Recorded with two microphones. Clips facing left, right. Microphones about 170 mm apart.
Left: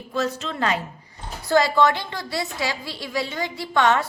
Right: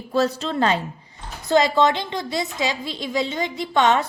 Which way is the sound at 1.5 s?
20° right (ahead or behind).